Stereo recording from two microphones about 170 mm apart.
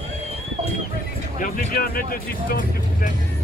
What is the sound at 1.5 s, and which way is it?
Vehicle, 60° left (ahead or behind).